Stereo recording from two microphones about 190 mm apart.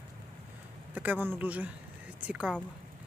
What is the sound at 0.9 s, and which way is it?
Speech, 10° right (ahead or behind).